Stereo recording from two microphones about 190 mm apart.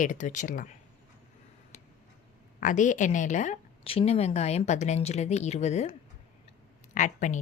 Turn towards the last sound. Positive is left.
turn(degrees=40)  # may be behind; listen again after turning